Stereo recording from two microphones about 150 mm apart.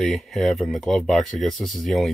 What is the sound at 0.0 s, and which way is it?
Speech, centre (ahead or behind).